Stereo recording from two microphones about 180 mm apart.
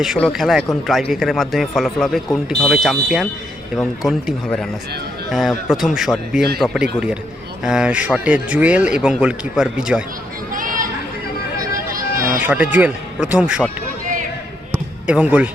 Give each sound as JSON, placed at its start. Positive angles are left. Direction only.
{"t": 0.0, "sound": "speech", "side_deg": 0}
{"t": 6.6, "sound": "a man's voice", "side_deg": 10}
{"t": 7.6, "sound": "speech", "side_deg": -5}
{"t": 10.5, "sound": "chatter", "side_deg": -50}
{"t": 12.4, "sound": "speech", "side_deg": -10}
{"t": 15.0, "sound": "speech", "side_deg": -5}